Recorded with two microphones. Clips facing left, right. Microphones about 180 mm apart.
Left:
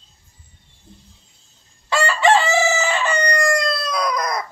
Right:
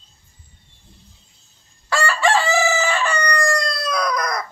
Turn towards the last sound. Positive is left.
turn(degrees=25)  # may be behind; listen again after turning